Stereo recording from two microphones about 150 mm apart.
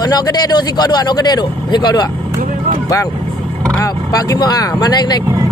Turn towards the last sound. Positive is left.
turn(degrees=25)  # may be behind; listen again after turning